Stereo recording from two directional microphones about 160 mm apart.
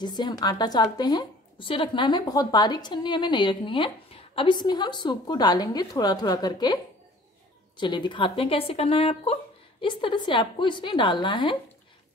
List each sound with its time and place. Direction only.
0.0 s a woman's voice: 25° left (ahead or behind)